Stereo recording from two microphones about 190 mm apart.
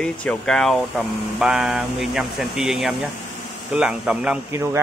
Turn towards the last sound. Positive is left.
turn(degrees=-10)  # may be behind; listen again after turning